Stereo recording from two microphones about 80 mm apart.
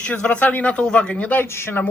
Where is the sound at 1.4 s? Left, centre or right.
Left.